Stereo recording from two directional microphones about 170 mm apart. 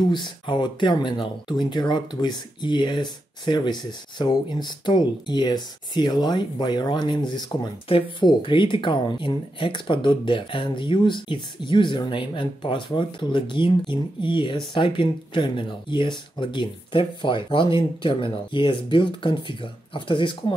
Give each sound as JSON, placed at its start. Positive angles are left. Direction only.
{"t": 0.0, "sound": "speech", "side_deg": 25}